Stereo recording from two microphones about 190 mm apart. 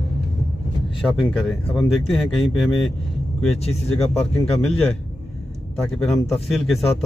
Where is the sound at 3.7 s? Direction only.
35° left (ahead or behind).